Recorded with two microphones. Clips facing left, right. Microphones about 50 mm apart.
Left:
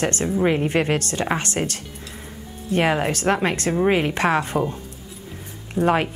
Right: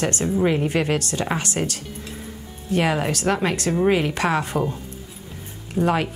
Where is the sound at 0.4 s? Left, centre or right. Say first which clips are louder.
Left 1 dB; centre.